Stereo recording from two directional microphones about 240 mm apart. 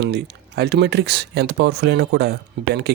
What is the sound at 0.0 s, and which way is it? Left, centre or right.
Speech, right.